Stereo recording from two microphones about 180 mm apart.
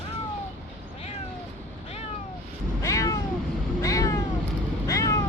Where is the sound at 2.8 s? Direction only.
20° left (ahead or behind).